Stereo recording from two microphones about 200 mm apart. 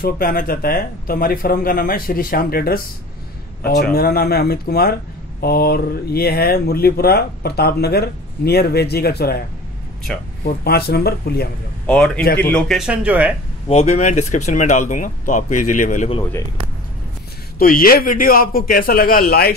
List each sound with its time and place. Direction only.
0.0 s speech: 45° left (ahead or behind)
3.9 s speech: 50° left (ahead or behind)
10.1 s speech: 5° left (ahead or behind)
10.4 s speech: 50° left (ahead or behind)
11.8 s a man's voice: 5° left (ahead or behind)
13.7 s speech: 35° left (ahead or behind)
17.6 s speech: 45° left (ahead or behind)